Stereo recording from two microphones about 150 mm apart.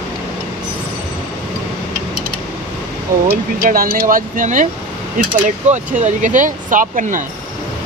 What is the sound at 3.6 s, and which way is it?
Speech, 70° right (ahead or behind).